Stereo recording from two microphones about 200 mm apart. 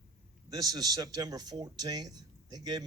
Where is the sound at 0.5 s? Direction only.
20° right (ahead or behind).